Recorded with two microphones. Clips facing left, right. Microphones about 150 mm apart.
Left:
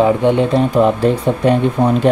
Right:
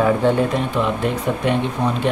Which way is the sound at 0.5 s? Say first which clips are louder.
Left 8 dB; 35° left (ahead or behind).